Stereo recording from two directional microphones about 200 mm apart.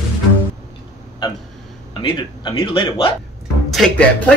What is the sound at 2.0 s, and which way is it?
Speech, 20° left (ahead or behind).